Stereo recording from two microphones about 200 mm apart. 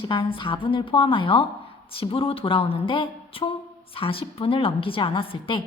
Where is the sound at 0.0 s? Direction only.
25° left (ahead or behind).